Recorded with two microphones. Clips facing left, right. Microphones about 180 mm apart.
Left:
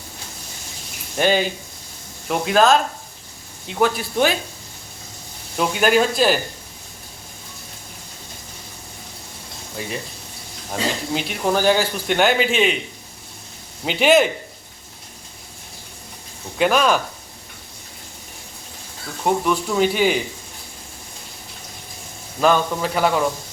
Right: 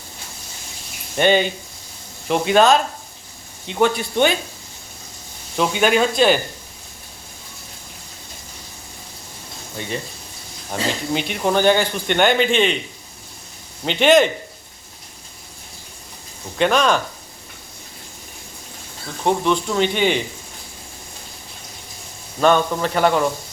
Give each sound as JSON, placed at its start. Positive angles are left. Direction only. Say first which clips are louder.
{"t": 1.1, "sound": "speech", "louder": "right 2 dB", "side_deg": 0}
{"t": 5.5, "sound": "speech", "louder": "even", "side_deg": 5}
{"t": 10.7, "sound": "speech", "louder": "right 1 dB", "side_deg": 0}
{"t": 13.8, "sound": "speech", "louder": "right 1 dB", "side_deg": 5}
{"t": 16.6, "sound": "speech", "louder": "even", "side_deg": 5}
{"t": 19.2, "sound": "speech", "louder": "right 1 dB", "side_deg": 5}
{"t": 22.4, "sound": "speech", "louder": "right 1 dB", "side_deg": 0}